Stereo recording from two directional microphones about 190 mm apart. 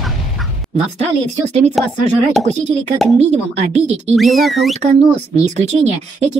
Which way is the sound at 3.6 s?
35° right (ahead or behind).